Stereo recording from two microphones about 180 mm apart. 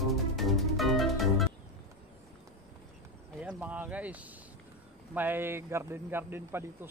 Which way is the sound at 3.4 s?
5° right (ahead or behind).